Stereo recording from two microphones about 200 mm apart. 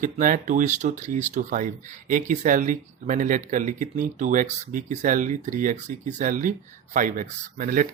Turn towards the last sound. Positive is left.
turn(degrees=-45)  # may be behind; listen again after turning